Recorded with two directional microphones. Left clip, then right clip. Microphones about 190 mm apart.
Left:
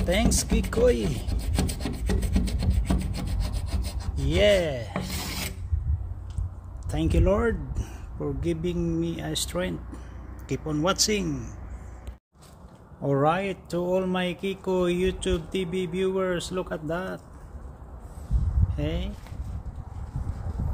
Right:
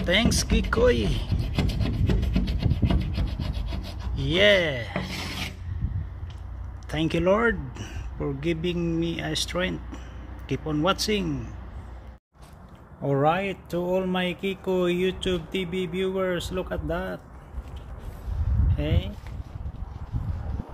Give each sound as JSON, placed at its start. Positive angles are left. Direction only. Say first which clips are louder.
{"t": 0.0, "sound": "speech", "louder": "right 2 dB", "side_deg": 5}
{"t": 2.3, "sound": "rub", "louder": "right 1 dB", "side_deg": 10}
{"t": 6.9, "sound": "speech", "louder": "right 2 dB", "side_deg": 0}
{"t": 13.0, "sound": "speech", "louder": "right 1 dB", "side_deg": 0}
{"t": 18.8, "sound": "speech", "louder": "right 1 dB", "side_deg": -5}